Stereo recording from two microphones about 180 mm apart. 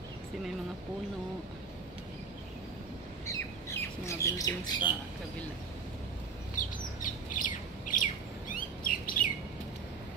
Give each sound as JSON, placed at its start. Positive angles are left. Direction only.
{"t": 3.3, "sound": "speech", "side_deg": 15}
{"t": 6.5, "sound": "squawk", "side_deg": 45}